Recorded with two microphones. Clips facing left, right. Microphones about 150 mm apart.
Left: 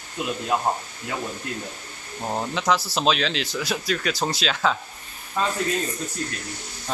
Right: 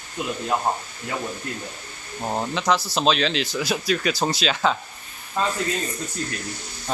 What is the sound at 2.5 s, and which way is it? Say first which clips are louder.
Speech: even; 5° left (ahead or behind).